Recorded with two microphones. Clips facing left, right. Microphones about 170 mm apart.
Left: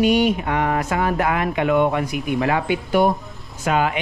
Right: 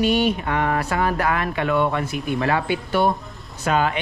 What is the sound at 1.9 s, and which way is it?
Speech, 15° left (ahead or behind).